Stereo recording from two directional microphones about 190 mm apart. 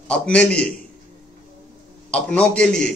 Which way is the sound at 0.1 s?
5° left (ahead or behind).